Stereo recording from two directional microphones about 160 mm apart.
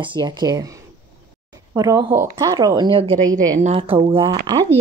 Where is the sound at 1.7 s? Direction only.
25° right (ahead or behind).